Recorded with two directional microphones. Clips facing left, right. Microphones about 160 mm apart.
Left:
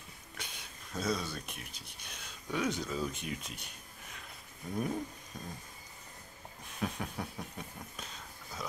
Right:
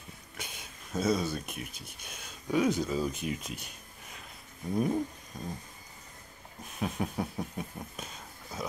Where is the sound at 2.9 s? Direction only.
10° right (ahead or behind).